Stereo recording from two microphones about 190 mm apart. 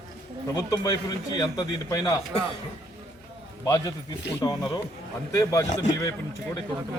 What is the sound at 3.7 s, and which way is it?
Speech, 20° left (ahead or behind).